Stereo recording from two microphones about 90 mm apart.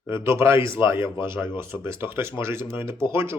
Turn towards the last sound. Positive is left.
turn(degrees=-30)  # may be behind; listen again after turning